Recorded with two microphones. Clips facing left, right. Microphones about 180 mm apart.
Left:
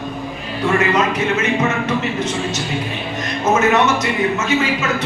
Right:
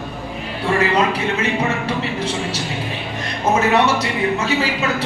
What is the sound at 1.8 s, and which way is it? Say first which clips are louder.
Speech: left 2 dB; 30° right (ahead or behind).